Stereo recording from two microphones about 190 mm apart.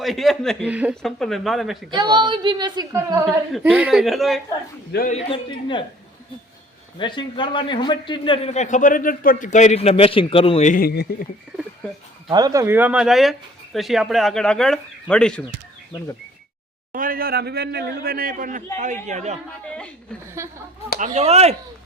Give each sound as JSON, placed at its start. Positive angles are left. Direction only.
{"t": 0.0, "sound": "speech", "side_deg": 0}
{"t": 1.9, "sound": "a woman's voice", "side_deg": -25}
{"t": 3.2, "sound": "speech", "side_deg": -5}
{"t": 5.0, "sound": "speech", "side_deg": 30}
{"t": 7.0, "sound": "a man's voice", "side_deg": 25}
{"t": 12.3, "sound": "speech", "side_deg": -20}
{"t": 16.9, "sound": "speech", "side_deg": -45}
{"t": 21.0, "sound": "speech", "side_deg": -40}